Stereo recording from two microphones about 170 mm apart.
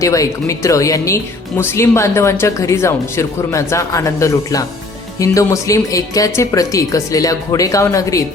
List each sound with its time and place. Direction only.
0.0 s speech: 20° left (ahead or behind)